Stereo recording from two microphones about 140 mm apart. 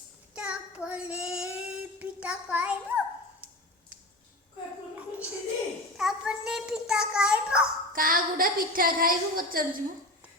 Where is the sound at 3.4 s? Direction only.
10° right (ahead or behind).